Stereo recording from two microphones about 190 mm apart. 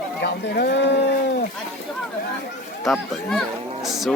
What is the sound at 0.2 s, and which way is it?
Speech, 60° left (ahead or behind).